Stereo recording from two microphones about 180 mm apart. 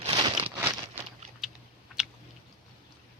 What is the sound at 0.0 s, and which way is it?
Crumpling, 30° right (ahead or behind).